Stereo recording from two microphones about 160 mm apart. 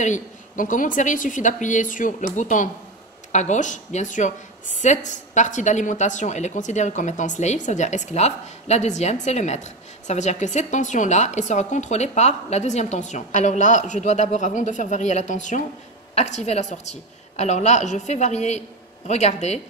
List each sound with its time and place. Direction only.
0.0 s a woman's voice: 50° left (ahead or behind)